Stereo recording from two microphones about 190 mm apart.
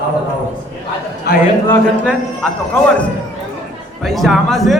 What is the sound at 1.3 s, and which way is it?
Speech, 55° left (ahead or behind).